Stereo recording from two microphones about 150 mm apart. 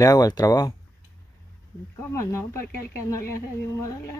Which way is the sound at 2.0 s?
20° left (ahead or behind).